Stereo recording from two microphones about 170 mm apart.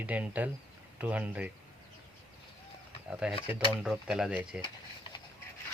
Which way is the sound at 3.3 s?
30° left (ahead or behind).